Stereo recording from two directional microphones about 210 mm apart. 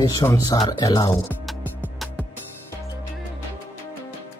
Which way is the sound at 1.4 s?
5° left (ahead or behind).